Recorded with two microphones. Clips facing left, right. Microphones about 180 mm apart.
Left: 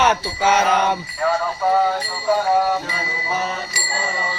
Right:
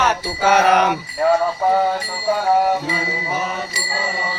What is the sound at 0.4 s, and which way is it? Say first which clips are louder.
Mantra: right 3 dB; 65° right (ahead or behind).